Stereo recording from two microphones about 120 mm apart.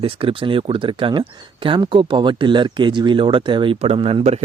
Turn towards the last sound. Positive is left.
turn(degrees=-50)  # may be behind; listen again after turning